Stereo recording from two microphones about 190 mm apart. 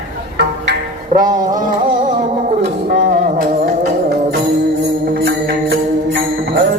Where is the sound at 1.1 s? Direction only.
45° right (ahead or behind).